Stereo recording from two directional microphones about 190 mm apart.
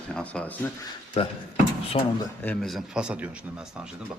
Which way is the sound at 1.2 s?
30° left (ahead or behind).